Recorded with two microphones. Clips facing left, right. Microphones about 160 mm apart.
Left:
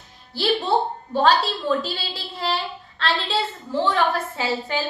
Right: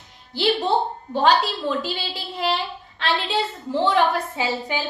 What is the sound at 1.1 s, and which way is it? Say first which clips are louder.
A woman's voice: even; 15° right (ahead or behind).